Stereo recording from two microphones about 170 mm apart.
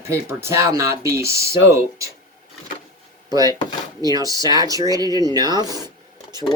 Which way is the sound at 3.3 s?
20° right (ahead or behind).